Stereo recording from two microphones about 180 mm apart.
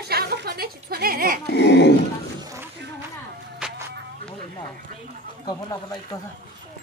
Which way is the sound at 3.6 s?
5° right (ahead or behind).